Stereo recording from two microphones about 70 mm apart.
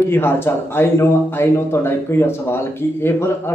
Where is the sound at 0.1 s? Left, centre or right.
Left.